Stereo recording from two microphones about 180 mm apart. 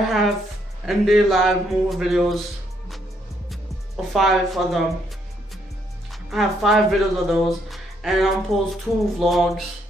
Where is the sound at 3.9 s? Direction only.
Centre (ahead or behind).